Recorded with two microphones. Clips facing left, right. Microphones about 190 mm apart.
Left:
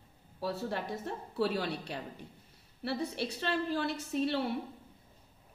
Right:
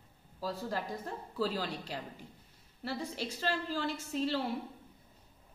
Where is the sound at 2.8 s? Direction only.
65° left (ahead or behind).